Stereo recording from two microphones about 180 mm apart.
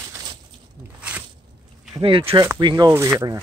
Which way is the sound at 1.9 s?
30° right (ahead or behind).